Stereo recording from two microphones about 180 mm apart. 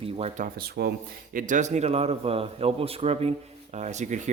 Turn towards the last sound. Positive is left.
turn(degrees=-40)  # may be behind; listen again after turning